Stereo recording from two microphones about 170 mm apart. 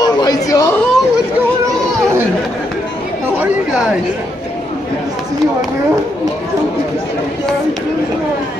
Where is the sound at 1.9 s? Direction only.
15° right (ahead or behind).